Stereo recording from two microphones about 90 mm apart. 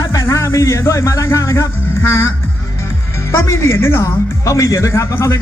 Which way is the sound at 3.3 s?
30° left (ahead or behind).